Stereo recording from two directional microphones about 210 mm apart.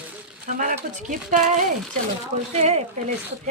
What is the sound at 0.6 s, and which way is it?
Speech, 40° right (ahead or behind).